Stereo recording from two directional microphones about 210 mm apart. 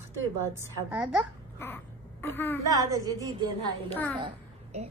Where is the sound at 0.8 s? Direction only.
5° right (ahead or behind).